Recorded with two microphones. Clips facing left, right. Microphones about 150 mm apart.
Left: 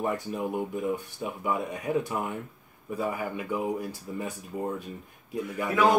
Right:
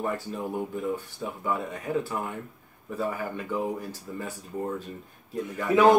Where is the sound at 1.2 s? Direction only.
15° left (ahead or behind).